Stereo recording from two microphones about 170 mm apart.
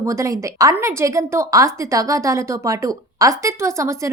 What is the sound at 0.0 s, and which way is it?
A woman's voice, 20° right (ahead or behind).